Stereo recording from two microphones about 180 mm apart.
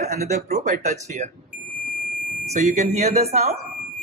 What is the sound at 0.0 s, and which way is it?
Speech, 40° right (ahead or behind).